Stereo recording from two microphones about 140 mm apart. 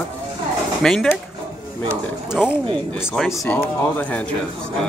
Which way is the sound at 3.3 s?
20° left (ahead or behind).